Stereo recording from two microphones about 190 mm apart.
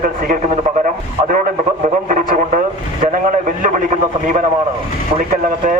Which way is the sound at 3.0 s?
45° right (ahead or behind).